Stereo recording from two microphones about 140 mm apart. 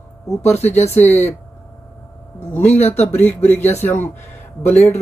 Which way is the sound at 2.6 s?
50° left (ahead or behind).